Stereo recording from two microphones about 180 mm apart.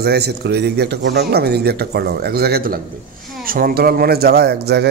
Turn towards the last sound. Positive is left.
turn(degrees=-65)  # may be behind; listen again after turning